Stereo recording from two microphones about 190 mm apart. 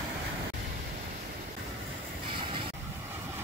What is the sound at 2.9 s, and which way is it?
Vehicle, 10° right (ahead or behind).